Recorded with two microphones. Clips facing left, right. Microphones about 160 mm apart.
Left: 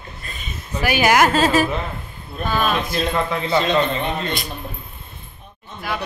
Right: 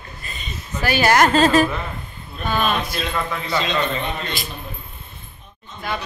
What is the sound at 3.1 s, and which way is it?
Speech, 25° left (ahead or behind).